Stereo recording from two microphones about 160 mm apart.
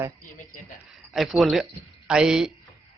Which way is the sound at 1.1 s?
Centre (ahead or behind).